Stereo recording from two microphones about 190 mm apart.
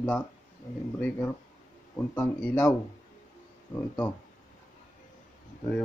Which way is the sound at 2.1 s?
5° left (ahead or behind).